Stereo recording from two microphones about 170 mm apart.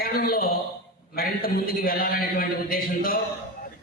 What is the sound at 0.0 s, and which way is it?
A man's voice, 60° left (ahead or behind).